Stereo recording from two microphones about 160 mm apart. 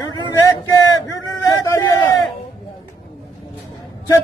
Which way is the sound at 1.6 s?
20° left (ahead or behind).